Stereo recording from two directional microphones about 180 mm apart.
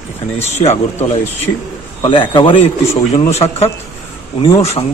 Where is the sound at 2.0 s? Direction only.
25° left (ahead or behind).